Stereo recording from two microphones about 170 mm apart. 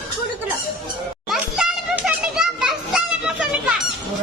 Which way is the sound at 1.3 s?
5° right (ahead or behind).